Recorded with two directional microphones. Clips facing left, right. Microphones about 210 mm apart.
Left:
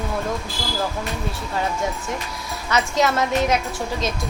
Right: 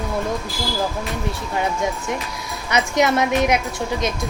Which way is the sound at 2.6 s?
15° right (ahead or behind).